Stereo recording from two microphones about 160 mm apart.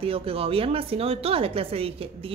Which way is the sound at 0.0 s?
35° right (ahead or behind).